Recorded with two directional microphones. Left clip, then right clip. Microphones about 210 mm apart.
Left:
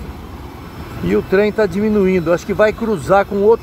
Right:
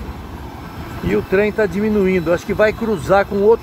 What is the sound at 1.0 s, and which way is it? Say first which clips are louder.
Speech: left 2 dB; 25° left (ahead or behind).